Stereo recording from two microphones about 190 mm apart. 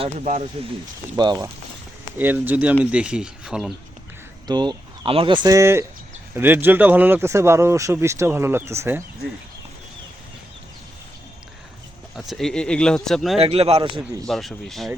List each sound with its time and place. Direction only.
0.0 s a man's voice: 35° right (ahead or behind)
1.1 s speech: 20° right (ahead or behind)
2.1 s speech: 10° right (ahead or behind)
4.4 s speech: 20° right (ahead or behind)
12.3 s speech: centre (ahead or behind)
13.4 s a man's voice: 30° right (ahead or behind)
14.3 s speech: centre (ahead or behind)